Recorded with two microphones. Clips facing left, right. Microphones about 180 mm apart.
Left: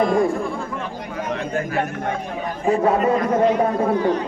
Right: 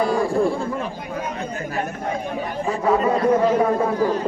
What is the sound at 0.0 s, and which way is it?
Speech, 35° right (ahead or behind).